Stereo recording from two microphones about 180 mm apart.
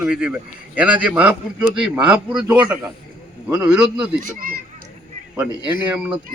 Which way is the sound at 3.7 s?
5° right (ahead or behind).